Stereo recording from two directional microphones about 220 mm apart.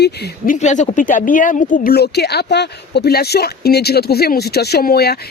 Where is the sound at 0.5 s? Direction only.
35° left (ahead or behind).